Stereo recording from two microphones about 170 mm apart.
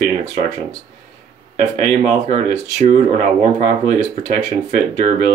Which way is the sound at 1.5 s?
45° right (ahead or behind).